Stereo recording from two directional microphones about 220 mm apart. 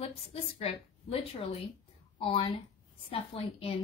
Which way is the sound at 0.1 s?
25° left (ahead or behind).